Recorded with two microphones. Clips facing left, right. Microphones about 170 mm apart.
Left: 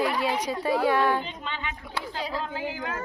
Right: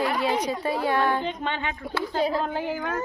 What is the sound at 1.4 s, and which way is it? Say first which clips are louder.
Speech: right 6 dB; 50° right (ahead or behind).